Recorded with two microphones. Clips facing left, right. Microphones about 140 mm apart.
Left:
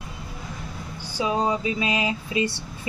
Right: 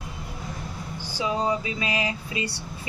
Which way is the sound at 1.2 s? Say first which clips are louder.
Left 2 dB; 25° left (ahead or behind).